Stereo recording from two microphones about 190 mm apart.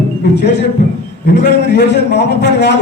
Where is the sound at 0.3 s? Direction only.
65° left (ahead or behind).